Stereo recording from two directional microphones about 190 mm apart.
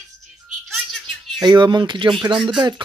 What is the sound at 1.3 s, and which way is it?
Speech, 25° right (ahead or behind).